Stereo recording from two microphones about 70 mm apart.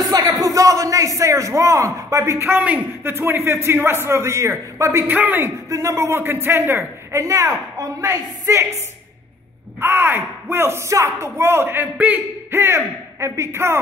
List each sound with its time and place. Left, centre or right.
0.4 s a man's voice: right
5.0 s a man's voice: right
5.4 s a woman's voice: right
9.8 s speech: right